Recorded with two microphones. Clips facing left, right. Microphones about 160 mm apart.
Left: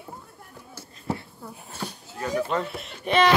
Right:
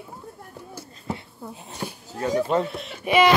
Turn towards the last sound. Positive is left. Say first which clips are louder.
# right 2 dB
turn(degrees=-10)  # may be behind; listen again after turning